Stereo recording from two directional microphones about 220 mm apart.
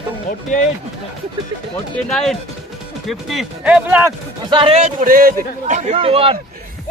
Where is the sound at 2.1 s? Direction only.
Centre (ahead or behind).